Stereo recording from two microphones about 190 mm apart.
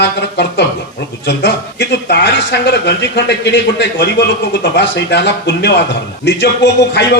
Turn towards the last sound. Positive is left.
turn(degrees=60)  # may be behind; listen again after turning